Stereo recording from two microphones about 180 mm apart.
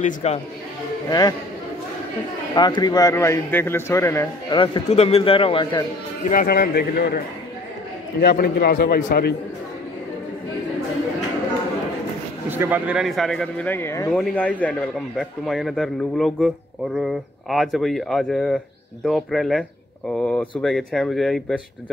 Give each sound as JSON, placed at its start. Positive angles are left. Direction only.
{"t": 0.0, "sound": "a man's voice", "side_deg": 35}
{"t": 2.5, "sound": "a man's voice", "side_deg": 25}
{"t": 4.5, "sound": "speech", "side_deg": 25}
{"t": 6.3, "sound": "a man's voice", "side_deg": 60}
{"t": 12.4, "sound": "a man's voice", "side_deg": -10}